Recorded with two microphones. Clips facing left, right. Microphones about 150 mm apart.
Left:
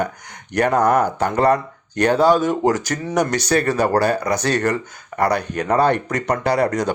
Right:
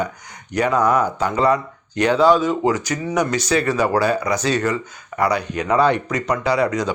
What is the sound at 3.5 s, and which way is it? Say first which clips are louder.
Speech: left 1 dB; 60° left (ahead or behind).